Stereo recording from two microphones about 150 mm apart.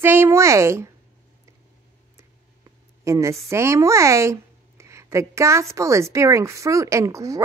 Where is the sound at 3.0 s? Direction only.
20° right (ahead or behind).